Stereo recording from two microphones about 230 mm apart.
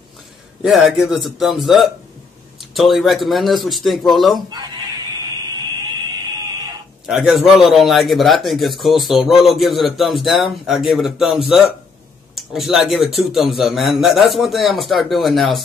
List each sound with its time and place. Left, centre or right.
0.6 s a man's voice: centre
4.5 s speech: centre
7.1 s a man's voice: centre